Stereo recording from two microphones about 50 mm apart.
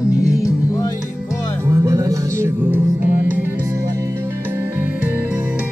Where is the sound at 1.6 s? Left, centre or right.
Right.